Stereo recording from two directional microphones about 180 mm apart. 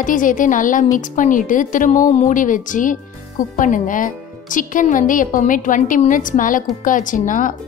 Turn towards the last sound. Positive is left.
turn(degrees=45)  # may be behind; listen again after turning